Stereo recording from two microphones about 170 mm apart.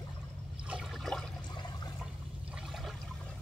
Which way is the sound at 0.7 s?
5° right (ahead or behind).